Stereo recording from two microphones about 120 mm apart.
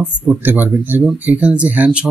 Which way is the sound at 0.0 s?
15° right (ahead or behind).